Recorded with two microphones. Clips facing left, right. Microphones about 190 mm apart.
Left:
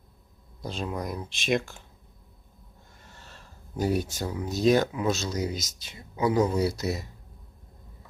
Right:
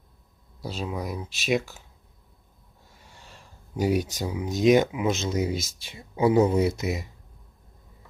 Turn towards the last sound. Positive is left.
turn(degrees=-20)  # may be behind; listen again after turning